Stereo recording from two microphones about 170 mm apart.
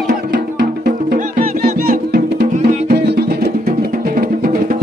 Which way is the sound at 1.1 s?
55° right (ahead or behind).